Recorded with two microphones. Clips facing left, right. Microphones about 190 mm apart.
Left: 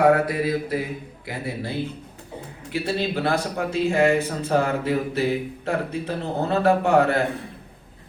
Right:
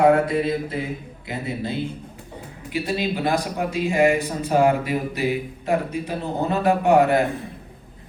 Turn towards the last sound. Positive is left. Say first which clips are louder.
# right 2 dB
turn(degrees=-15)  # may be behind; listen again after turning